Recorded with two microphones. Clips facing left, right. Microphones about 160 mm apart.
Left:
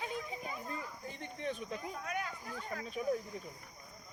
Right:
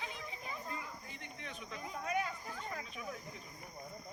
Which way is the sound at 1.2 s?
35° left (ahead or behind).